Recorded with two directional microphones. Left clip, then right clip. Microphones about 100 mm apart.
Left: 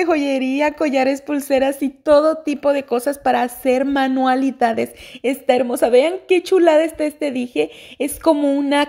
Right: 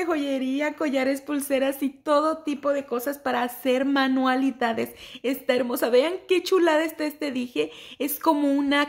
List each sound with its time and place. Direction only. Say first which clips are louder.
0.0 s a woman's voice: left 8 dB; 45° left (ahead or behind); by 8.4 s 30° left (ahead or behind)
8.4 s speech: left 6 dB; 10° left (ahead or behind)